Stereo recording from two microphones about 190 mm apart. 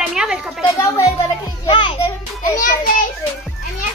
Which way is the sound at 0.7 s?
15° left (ahead or behind).